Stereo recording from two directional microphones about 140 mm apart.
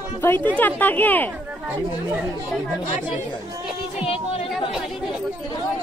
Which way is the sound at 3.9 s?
40° left (ahead or behind).